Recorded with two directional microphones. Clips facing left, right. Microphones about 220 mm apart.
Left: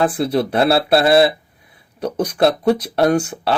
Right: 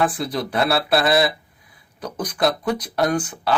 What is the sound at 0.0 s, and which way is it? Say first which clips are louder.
Speech: left 5 dB; 25° left (ahead or behind).